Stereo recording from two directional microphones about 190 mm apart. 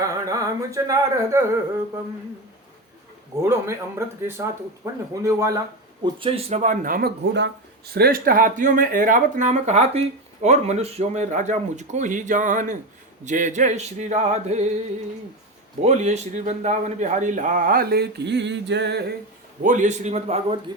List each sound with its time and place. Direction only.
0.3 s speech: 15° right (ahead or behind)
3.4 s speech: 15° right (ahead or behind)
6.1 s a man's voice: 30° right (ahead or behind); by 19.1 s 60° right (ahead or behind)
19.6 s speech: 40° right (ahead or behind)